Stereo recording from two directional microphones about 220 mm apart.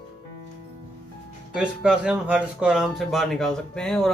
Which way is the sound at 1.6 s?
5° right (ahead or behind).